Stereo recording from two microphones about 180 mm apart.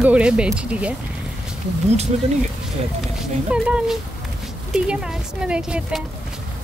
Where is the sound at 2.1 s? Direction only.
40° right (ahead or behind).